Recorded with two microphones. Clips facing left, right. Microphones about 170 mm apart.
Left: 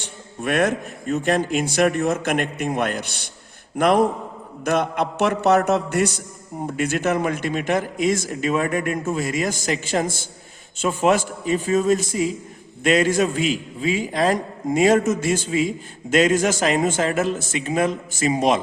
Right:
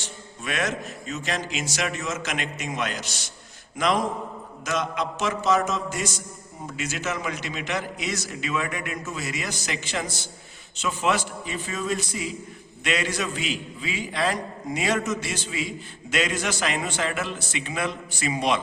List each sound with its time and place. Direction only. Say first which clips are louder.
0.0 s a man's voice: left 8 dB; 55° left (ahead or behind)